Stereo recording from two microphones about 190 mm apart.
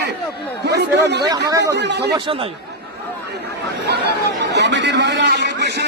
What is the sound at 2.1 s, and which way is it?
Speech, 25° right (ahead or behind).